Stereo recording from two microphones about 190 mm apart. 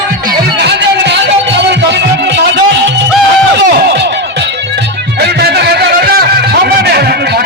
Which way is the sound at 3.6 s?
65° right (ahead or behind).